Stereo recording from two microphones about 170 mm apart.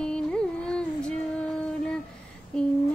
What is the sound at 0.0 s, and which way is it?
Music, 5° left (ahead or behind).